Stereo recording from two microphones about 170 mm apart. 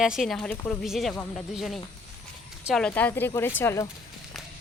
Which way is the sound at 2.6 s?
5° left (ahead or behind).